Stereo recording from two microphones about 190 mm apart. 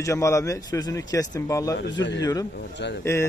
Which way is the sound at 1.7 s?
70° left (ahead or behind).